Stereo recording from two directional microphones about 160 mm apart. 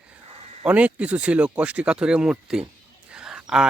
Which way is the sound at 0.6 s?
10° right (ahead or behind).